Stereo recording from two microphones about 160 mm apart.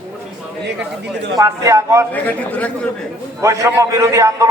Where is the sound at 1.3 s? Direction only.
20° right (ahead or behind).